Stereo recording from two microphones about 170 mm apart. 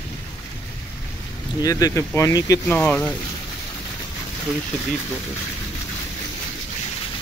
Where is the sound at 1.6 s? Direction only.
20° left (ahead or behind).